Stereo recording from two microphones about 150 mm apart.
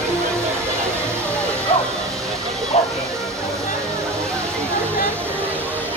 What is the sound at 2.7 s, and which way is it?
Music, 45° left (ahead or behind).